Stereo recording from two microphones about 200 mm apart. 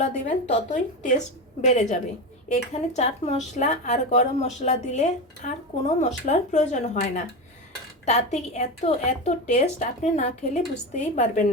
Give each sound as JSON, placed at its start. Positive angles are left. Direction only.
{"t": 0.0, "sound": "a woman's voice", "side_deg": 40}